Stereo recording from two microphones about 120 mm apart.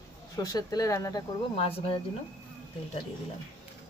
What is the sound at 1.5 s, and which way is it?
Speech, 55° left (ahead or behind).